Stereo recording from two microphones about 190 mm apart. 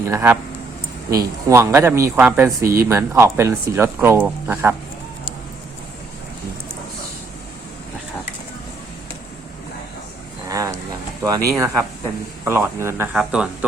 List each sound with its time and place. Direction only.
0.1 s speech: 10° right (ahead or behind)
10.5 s a sound: 15° right (ahead or behind)
11.2 s speech: 15° right (ahead or behind)